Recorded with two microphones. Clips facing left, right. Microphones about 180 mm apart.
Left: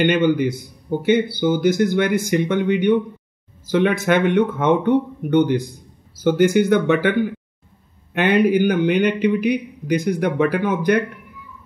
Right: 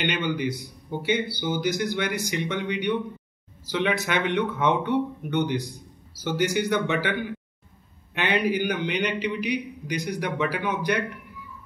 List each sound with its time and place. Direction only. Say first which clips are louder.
0.0 s a man's voice: left 10 dB; 50° left (ahead or behind)